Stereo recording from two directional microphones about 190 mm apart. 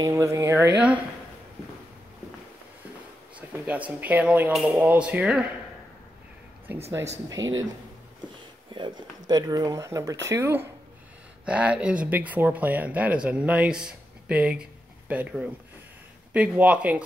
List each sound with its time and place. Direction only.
0.0 s speech: 15° right (ahead or behind)
3.3 s speech: 10° right (ahead or behind)
7.2 s speech: 20° right (ahead or behind)
8.7 s speech: 20° right (ahead or behind)